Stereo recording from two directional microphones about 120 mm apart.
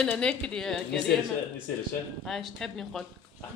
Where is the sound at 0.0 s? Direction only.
10° left (ahead or behind).